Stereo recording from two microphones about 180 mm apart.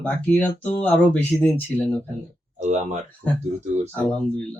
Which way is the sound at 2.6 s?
40° right (ahead or behind).